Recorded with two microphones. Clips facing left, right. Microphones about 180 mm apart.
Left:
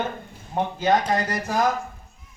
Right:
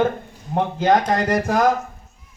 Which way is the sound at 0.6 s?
55° right (ahead or behind).